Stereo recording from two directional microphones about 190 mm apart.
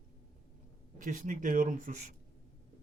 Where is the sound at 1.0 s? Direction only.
40° right (ahead or behind).